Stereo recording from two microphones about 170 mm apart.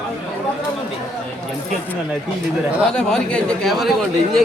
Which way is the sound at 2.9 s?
5° left (ahead or behind).